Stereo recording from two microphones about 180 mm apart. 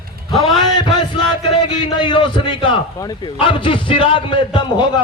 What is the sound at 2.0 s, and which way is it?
A man's voice, 25° left (ahead or behind).